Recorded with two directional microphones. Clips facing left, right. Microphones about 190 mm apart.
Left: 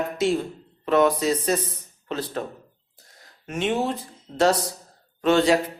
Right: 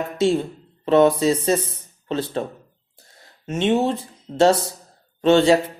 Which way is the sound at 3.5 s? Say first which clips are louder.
Right 5 dB; 25° right (ahead or behind).